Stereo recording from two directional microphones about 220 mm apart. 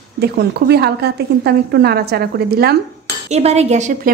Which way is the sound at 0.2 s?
45° right (ahead or behind).